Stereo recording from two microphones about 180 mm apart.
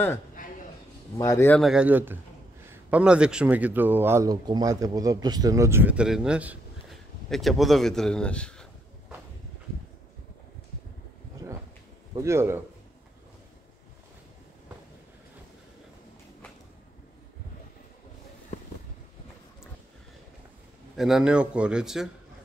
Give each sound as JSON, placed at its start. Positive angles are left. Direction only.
{"t": 1.1, "sound": "speech", "side_deg": 15}
{"t": 1.6, "sound": "a man's voice", "side_deg": -5}
{"t": 11.4, "sound": "a sound", "side_deg": -15}
{"t": 12.2, "sound": "a man's voice", "side_deg": -15}
{"t": 20.9, "sound": "a man's voice", "side_deg": 0}